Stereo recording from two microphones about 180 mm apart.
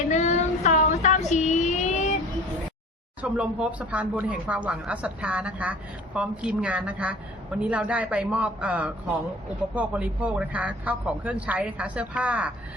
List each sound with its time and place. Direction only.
0.1 s child singing: 40° left (ahead or behind)
3.2 s a woman's voice: 5° right (ahead or behind)